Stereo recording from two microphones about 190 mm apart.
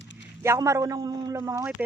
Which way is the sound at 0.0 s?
70° left (ahead or behind).